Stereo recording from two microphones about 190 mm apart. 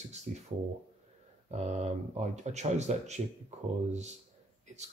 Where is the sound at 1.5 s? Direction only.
35° right (ahead or behind).